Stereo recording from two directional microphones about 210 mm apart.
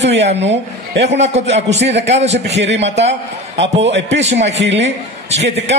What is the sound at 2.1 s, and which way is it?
Speech, 30° right (ahead or behind).